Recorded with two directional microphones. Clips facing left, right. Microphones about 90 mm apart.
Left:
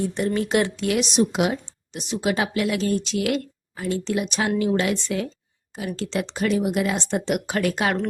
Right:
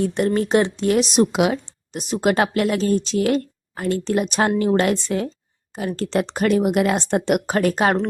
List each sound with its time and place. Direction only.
0.0 s speech: 60° right (ahead or behind)
0.3 s speech: 40° right (ahead or behind)
1.6 s speech: 45° right (ahead or behind)
2.7 s speech: 35° right (ahead or behind)
3.8 s speech: 55° right (ahead or behind); by 5.3 s 35° right (ahead or behind)
6.0 s speech: 50° right (ahead or behind)
7.5 s speech: 40° right (ahead or behind)